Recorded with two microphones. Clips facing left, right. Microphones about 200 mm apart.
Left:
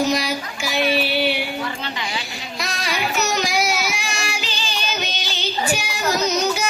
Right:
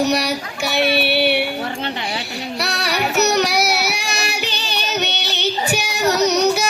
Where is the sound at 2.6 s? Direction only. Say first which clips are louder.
Right 3 dB; 70° right (ahead or behind).